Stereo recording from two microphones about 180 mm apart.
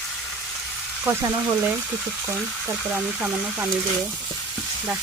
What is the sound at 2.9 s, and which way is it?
Speech, 5° right (ahead or behind).